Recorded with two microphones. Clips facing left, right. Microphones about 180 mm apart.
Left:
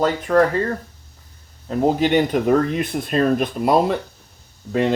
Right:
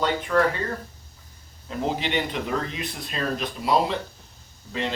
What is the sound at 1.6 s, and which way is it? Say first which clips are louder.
Speech: left 9 dB; 45° left (ahead or behind).